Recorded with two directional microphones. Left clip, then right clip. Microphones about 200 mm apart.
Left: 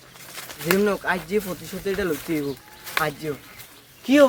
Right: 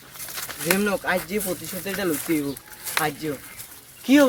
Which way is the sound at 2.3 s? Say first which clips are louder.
Right 2 dB; 50° right (ahead or behind).